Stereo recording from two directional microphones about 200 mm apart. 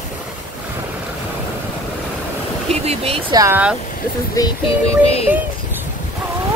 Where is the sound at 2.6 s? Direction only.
30° right (ahead or behind).